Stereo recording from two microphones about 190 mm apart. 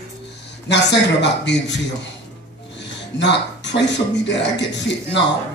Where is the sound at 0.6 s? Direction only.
65° left (ahead or behind).